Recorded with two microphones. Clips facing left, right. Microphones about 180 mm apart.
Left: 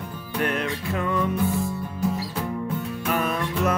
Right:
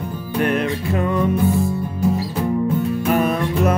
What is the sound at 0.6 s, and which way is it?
Music, 35° right (ahead or behind).